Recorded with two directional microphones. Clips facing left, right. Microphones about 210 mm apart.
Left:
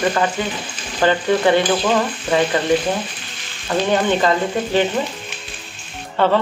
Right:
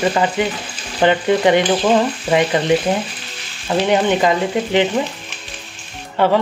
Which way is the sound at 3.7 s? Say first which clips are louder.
Right 2 dB; 15° right (ahead or behind).